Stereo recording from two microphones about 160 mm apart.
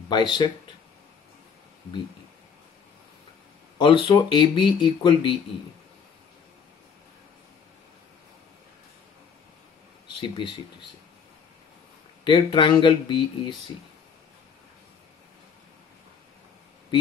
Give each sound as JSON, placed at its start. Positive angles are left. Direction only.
{"t": 0.1, "sound": "speech", "side_deg": 30}
{"t": 3.7, "sound": "speech", "side_deg": 30}
{"t": 10.1, "sound": "speech", "side_deg": 30}
{"t": 12.3, "sound": "speech", "side_deg": 30}